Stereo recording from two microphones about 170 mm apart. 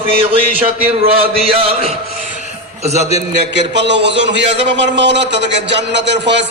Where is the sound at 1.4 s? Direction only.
35° right (ahead or behind).